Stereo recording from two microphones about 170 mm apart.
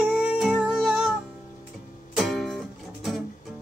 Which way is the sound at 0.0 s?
5° right (ahead or behind).